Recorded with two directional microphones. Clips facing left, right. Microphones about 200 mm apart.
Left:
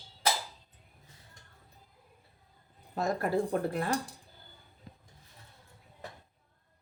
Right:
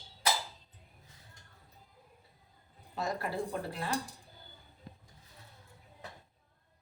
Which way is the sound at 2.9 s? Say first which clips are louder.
Left 6 dB; 50° left (ahead or behind).